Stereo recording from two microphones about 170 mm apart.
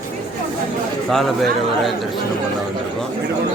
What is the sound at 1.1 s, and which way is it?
Speech, centre (ahead or behind).